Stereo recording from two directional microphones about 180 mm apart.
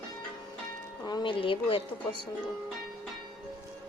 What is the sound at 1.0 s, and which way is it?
A woman's voice, 25° left (ahead or behind).